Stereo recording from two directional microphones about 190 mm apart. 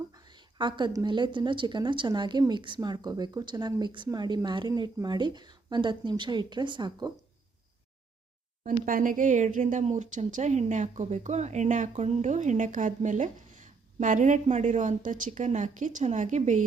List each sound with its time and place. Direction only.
0.1 s a woman's voice: 20° right (ahead or behind)
8.9 s a woman's voice: 45° right (ahead or behind)